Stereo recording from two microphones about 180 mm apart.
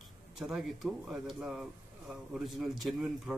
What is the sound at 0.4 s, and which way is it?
Speech, centre (ahead or behind).